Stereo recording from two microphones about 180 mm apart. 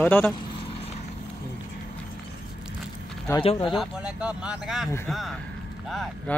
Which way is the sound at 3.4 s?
30° left (ahead or behind).